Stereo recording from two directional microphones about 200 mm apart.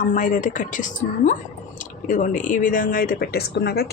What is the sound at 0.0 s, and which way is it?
A woman's voice, 40° left (ahead or behind).